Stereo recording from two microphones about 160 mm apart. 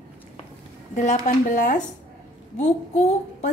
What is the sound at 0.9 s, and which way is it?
A woman's voice, 50° left (ahead or behind).